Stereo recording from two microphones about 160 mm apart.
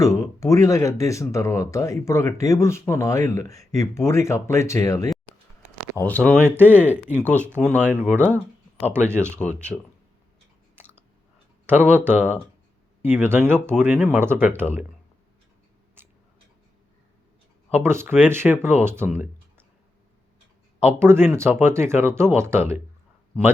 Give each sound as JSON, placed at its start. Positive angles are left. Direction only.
{"t": 0.0, "sound": "speech", "side_deg": 20}
{"t": 6.0, "sound": "speech", "side_deg": 10}
{"t": 6.4, "sound": "speech", "side_deg": -10}
{"t": 7.2, "sound": "speech", "side_deg": 10}
{"t": 7.7, "sound": "speech", "side_deg": -15}
{"t": 10.8, "sound": "chewing", "side_deg": -15}
{"t": 11.6, "sound": "speech", "side_deg": -15}
{"t": 16.0, "sound": "tick-tock", "side_deg": -15}
{"t": 17.7, "sound": "speech", "side_deg": -10}
{"t": 20.8, "sound": "speech", "side_deg": -15}